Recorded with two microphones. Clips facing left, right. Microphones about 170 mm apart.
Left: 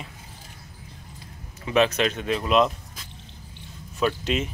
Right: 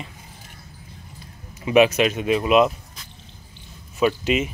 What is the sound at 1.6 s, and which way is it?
Speech, 10° right (ahead or behind).